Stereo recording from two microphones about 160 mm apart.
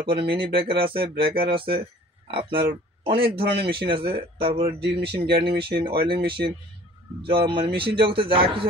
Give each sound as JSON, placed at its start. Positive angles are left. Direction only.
{"t": 0.0, "sound": "speech", "side_deg": -35}
{"t": 0.8, "sound": "speech", "side_deg": -75}
{"t": 1.5, "sound": "speech", "side_deg": -35}
{"t": 4.7, "sound": "speech", "side_deg": -85}
{"t": 5.7, "sound": "speech", "side_deg": -35}